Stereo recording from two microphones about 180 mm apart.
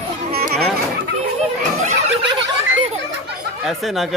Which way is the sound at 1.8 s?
40° right (ahead or behind).